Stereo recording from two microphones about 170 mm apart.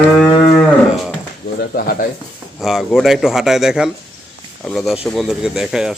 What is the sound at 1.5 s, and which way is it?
Speech, 60° left (ahead or behind).